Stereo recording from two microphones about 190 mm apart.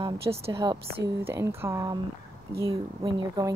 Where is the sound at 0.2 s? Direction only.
15° right (ahead or behind).